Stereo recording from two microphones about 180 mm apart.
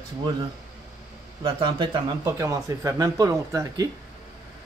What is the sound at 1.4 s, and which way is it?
A man's voice, 25° right (ahead or behind).